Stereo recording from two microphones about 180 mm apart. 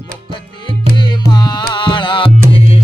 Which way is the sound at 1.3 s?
25° left (ahead or behind).